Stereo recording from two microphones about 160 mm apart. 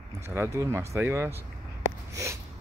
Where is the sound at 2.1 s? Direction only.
20° right (ahead or behind).